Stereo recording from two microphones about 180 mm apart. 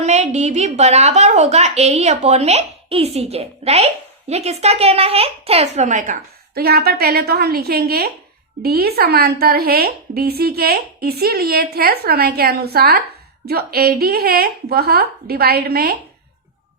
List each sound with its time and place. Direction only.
0.0 s a woman's voice: 40° right (ahead or behind)
6.5 s a woman's voice: 60° right (ahead or behind)